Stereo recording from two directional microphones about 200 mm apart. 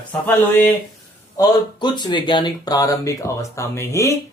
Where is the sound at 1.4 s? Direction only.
20° left (ahead or behind).